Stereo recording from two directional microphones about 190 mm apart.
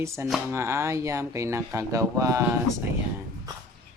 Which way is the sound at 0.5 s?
15° right (ahead or behind).